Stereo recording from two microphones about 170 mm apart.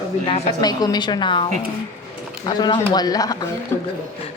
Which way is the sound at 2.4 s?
25° left (ahead or behind).